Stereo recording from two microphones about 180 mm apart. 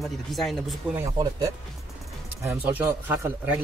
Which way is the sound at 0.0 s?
Centre (ahead or behind).